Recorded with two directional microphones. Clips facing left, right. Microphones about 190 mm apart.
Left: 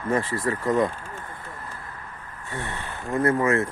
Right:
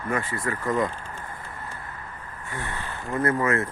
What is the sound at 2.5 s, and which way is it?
Speech, 25° left (ahead or behind).